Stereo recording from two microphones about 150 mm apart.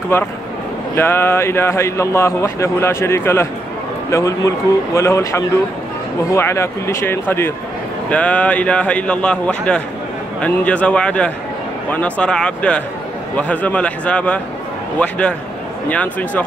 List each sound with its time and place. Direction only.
0.1 s speech: 15° left (ahead or behind)